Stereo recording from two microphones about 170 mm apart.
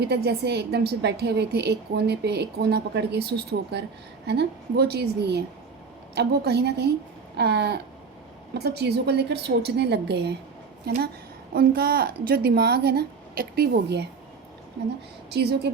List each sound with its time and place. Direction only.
0.0 s a woman's voice: 80° right
15.3 s speech: 75° right (ahead or behind)